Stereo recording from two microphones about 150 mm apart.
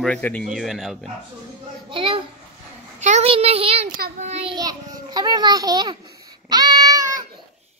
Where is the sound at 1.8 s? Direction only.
35° right (ahead or behind).